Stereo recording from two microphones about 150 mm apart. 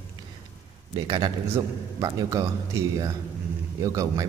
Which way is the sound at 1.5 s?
20° right (ahead or behind).